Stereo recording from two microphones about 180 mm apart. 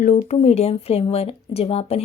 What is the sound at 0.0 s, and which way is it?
Speech, 40° left (ahead or behind).